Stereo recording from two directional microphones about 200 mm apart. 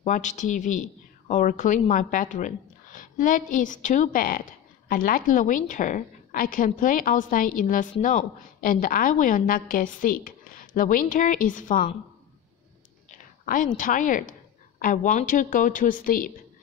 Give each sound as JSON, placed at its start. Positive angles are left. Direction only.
{"t": 0.0, "sound": "a woman's voice", "side_deg": 40}
{"t": 13.7, "sound": "a woman's voice", "side_deg": 40}